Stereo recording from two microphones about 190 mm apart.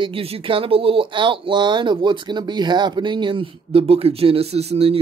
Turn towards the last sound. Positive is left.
turn(degrees=-30)  # may be behind; listen again after turning